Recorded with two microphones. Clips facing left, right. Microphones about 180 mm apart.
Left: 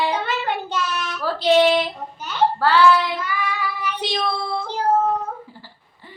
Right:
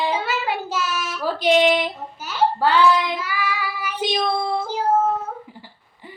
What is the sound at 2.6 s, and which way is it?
Child singing, 15° right (ahead or behind).